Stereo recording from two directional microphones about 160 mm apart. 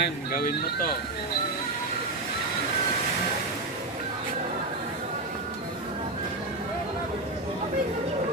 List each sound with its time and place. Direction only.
0.0 s speech: 65° left (ahead or behind)